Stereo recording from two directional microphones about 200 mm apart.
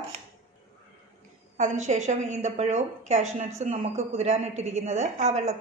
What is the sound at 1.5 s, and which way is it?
A woman's voice, 35° right (ahead or behind).